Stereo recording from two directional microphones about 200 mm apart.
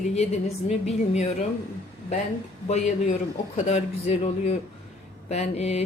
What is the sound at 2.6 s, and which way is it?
Speech, 35° left (ahead or behind).